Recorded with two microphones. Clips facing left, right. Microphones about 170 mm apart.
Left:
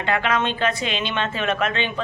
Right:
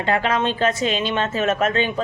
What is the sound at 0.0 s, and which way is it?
Speech, 35° right (ahead or behind).